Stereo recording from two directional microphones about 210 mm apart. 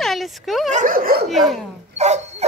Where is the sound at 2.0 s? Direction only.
30° right (ahead or behind).